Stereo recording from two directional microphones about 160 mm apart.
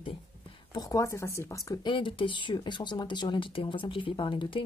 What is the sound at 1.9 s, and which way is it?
Speech, 30° left (ahead or behind).